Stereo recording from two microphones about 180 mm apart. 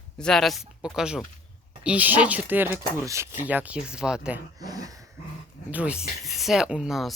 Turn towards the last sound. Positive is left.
turn(degrees=0)  # may be behind; listen again after turning